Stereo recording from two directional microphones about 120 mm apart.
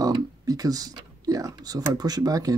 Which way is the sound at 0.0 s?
30° right (ahead or behind).